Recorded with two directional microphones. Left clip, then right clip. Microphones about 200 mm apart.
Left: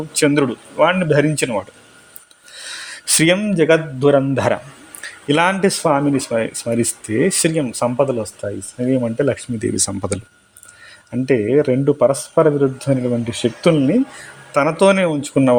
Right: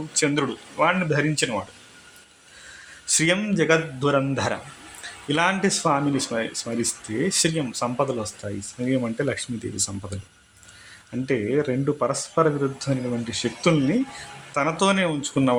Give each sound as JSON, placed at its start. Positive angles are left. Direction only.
{"t": 0.1, "sound": "speech", "side_deg": 35}
{"t": 3.1, "sound": "speech", "side_deg": 40}
{"t": 3.3, "sound": "speech", "side_deg": 30}